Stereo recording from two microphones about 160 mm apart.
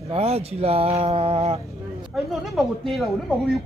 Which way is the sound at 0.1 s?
40° right (ahead or behind).